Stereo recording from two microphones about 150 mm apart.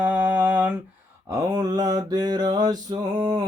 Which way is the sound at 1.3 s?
25° right (ahead or behind).